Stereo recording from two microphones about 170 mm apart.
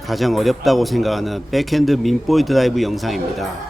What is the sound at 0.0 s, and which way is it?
A man's voice, centre (ahead or behind).